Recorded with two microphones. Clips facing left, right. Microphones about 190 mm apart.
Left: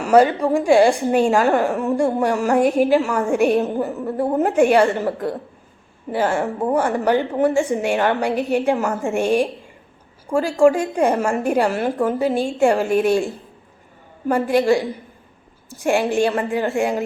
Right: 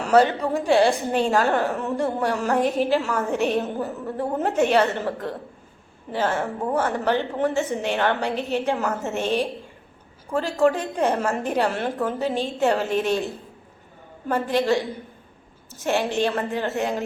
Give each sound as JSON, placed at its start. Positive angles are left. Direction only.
{"t": 0.0, "sound": "a woman's voice", "side_deg": 10}